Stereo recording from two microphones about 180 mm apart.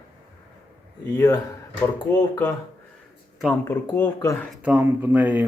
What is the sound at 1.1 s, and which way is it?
Speech, 20° left (ahead or behind).